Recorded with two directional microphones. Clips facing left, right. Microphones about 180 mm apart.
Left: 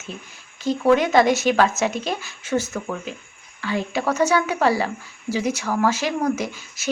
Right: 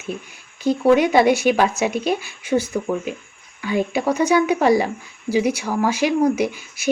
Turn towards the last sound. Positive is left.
turn(degrees=-15)  # may be behind; listen again after turning